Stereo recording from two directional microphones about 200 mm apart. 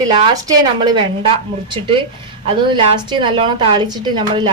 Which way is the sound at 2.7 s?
25° right (ahead or behind).